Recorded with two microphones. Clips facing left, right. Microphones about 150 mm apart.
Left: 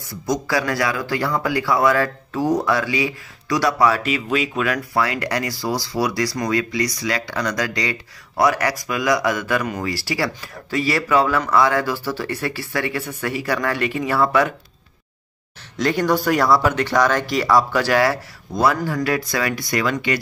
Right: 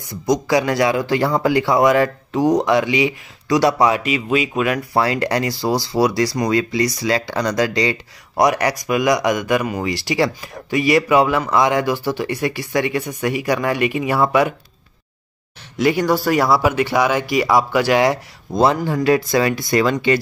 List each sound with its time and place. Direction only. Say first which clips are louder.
0.3 s speech: right 4 dB; 20° right (ahead or behind)
4.0 s speech: right 2 dB; 10° right (ahead or behind)
4.7 s speech: right 3 dB; 25° right (ahead or behind)
15.8 s speech: right 2 dB; 10° right (ahead or behind); by 20.2 s 30° right (ahead or behind)